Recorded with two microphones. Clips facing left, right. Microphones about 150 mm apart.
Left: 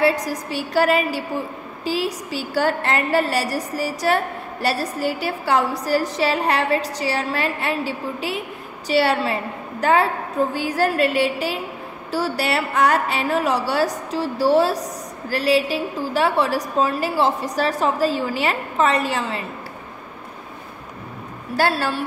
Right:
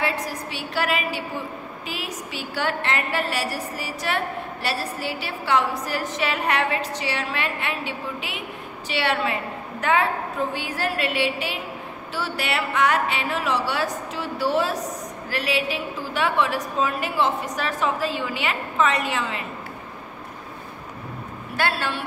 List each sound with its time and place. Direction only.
0.0 s a woman's voice: 40° left (ahead or behind)
21.5 s a woman's voice: 40° left (ahead or behind)